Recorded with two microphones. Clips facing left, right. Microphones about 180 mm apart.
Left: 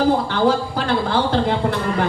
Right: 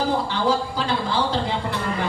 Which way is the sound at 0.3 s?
55° left (ahead or behind).